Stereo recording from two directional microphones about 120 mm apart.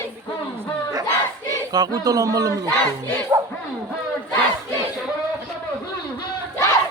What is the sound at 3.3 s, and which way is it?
Bow-wow, 20° right (ahead or behind).